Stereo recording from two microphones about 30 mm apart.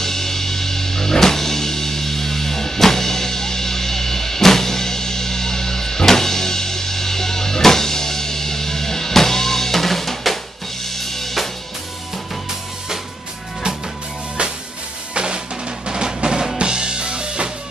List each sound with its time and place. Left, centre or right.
0.0 s music: centre
10.9 s drum kit: centre
15.1 s drum: right
16.2 s drum: right
16.5 s drum kit: right